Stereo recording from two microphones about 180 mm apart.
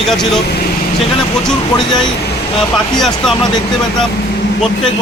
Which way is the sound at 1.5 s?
5° left (ahead or behind).